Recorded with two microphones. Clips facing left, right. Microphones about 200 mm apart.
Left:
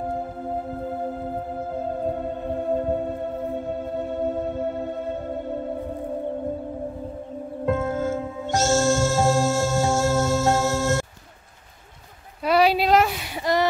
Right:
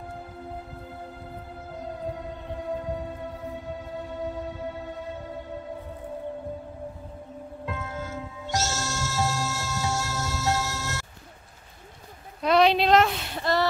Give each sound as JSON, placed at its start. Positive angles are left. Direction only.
{"t": 0.6, "sound": "music", "side_deg": 45}
{"t": 7.6, "sound": "music", "side_deg": 50}
{"t": 12.4, "sound": "a sound", "side_deg": 5}